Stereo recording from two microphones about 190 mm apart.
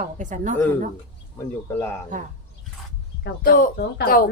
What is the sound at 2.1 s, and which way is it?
Speech, 45° right (ahead or behind).